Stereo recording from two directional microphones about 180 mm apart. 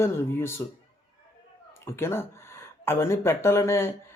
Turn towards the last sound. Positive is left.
turn(degrees=15)  # may be behind; listen again after turning